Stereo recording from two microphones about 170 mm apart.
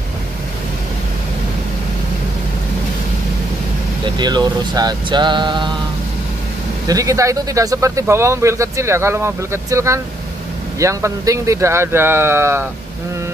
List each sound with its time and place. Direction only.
4.0 s speech: 25° right (ahead or behind)
6.9 s speech: 20° right (ahead or behind)